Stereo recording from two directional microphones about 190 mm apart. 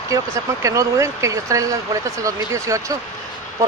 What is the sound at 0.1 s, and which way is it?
Speech, 15° right (ahead or behind).